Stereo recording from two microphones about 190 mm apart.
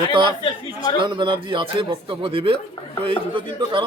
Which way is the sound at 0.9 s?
25° right (ahead or behind).